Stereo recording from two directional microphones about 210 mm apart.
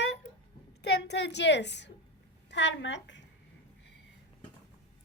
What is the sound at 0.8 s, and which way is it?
A woman's voice, 50° left (ahead or behind).